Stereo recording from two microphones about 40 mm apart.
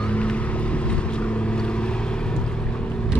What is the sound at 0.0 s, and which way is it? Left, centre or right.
Boat, left.